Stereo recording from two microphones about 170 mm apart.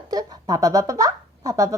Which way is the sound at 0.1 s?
20° right (ahead or behind).